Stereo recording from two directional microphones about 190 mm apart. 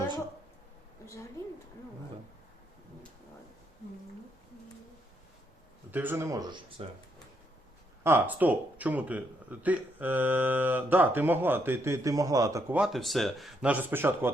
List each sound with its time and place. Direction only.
1.0 s a woman's voice: 15° left (ahead or behind)
5.9 s a man's voice: 10° right (ahead or behind)
8.0 s a man's voice: 10° right (ahead or behind)
12.8 s speech: centre (ahead or behind)